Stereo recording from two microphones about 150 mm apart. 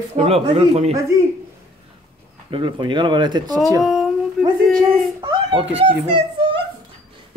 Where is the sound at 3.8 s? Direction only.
Centre (ahead or behind).